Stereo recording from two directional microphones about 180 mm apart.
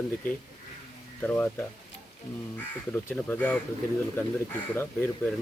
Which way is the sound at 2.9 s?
10° left (ahead or behind).